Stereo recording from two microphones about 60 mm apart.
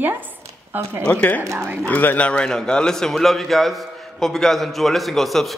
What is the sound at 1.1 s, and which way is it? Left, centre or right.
A man's voice, left.